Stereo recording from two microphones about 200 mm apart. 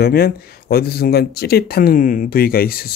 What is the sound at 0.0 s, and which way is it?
Speech, 50° left (ahead or behind).